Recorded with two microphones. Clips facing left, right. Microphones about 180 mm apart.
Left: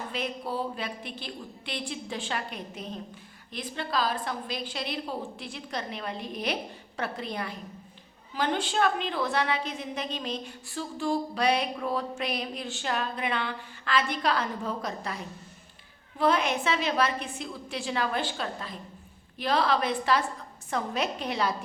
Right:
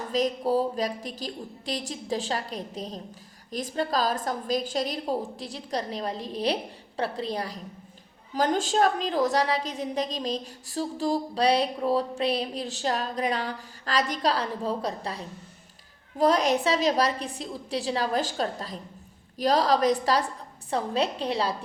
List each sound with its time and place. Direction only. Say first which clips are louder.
0.1 s a woman's voice: right 11 dB; 40° right (ahead or behind)